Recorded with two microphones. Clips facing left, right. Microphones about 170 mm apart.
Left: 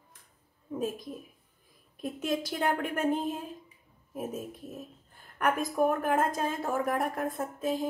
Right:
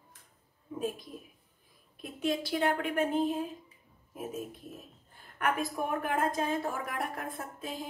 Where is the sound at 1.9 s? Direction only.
45° left (ahead or behind).